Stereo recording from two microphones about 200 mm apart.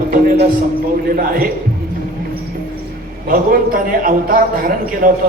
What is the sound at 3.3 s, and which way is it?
A man's voice, 45° right (ahead or behind).